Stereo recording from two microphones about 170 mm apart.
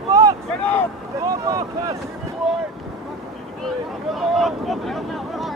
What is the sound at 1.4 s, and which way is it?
Boat, 20° right (ahead or behind).